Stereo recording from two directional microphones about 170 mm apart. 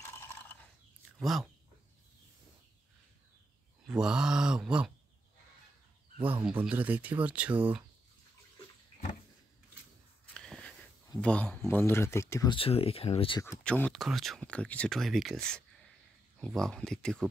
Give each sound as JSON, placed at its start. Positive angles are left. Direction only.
{"t": 0.2, "sound": "a sound", "side_deg": 10}
{"t": 1.2, "sound": "speech", "side_deg": 0}
{"t": 3.8, "sound": "speech", "side_deg": -5}
{"t": 6.4, "sound": "speech", "side_deg": -5}
{"t": 10.3, "sound": "a sound", "side_deg": 5}
{"t": 11.1, "sound": "speech", "side_deg": 5}
{"t": 12.5, "sound": "speech", "side_deg": 35}
{"t": 13.7, "sound": "speech", "side_deg": 5}